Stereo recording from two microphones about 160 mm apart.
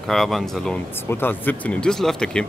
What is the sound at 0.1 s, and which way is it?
Speech, centre (ahead or behind).